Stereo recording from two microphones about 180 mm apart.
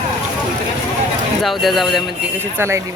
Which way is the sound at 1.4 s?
Centre (ahead or behind).